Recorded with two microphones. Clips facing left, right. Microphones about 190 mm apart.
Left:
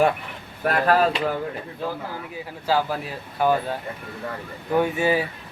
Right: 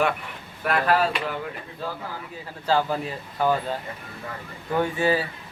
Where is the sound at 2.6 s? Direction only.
5° left (ahead or behind).